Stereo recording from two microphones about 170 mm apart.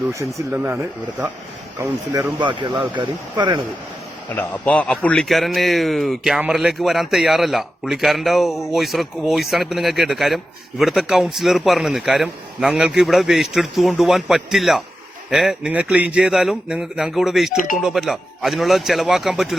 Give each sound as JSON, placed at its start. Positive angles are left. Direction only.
{"t": 0.1, "sound": "speech", "side_deg": -15}
{"t": 1.8, "sound": "speech", "side_deg": -15}
{"t": 2.4, "sound": "speech", "side_deg": -25}
{"t": 4.4, "sound": "a man's voice", "side_deg": 10}